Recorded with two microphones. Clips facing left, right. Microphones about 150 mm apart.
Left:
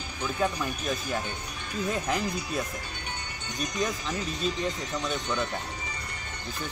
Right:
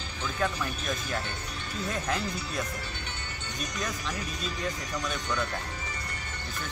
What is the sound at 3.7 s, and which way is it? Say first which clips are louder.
Speech: left 5 dB; 20° left (ahead or behind).